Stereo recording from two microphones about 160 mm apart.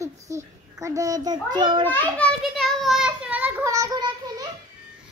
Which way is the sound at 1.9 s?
10° left (ahead or behind).